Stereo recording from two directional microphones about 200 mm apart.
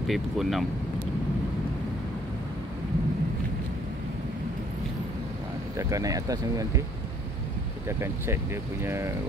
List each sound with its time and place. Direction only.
0.0 s speech: centre (ahead or behind)
5.8 s speech: 15° right (ahead or behind)
8.8 s speech: 15° right (ahead or behind)